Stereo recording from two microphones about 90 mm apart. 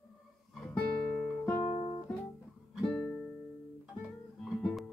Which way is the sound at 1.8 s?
70° left (ahead or behind).